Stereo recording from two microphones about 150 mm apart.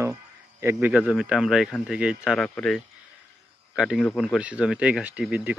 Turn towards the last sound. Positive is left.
turn(degrees=-10)  # may be behind; listen again after turning